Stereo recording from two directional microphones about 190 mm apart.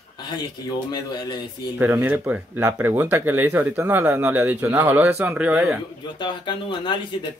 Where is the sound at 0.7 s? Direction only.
20° left (ahead or behind).